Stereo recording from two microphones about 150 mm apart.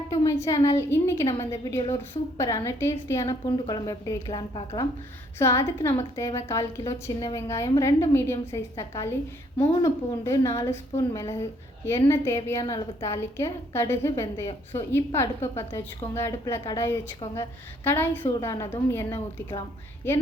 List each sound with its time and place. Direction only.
0.1 s a woman's voice: 20° left (ahead or behind)
5.4 s a woman's voice: 20° left (ahead or behind)
18.3 s a woman's voice: 25° left (ahead or behind)